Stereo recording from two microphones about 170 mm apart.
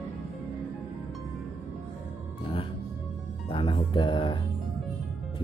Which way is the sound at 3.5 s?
30° left (ahead or behind).